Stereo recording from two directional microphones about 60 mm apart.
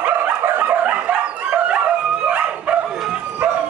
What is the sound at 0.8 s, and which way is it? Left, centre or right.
Dog, right.